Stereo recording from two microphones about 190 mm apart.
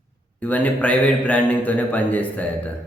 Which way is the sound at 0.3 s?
10° left (ahead or behind).